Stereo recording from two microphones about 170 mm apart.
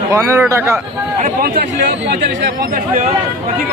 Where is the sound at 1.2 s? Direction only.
55° right (ahead or behind).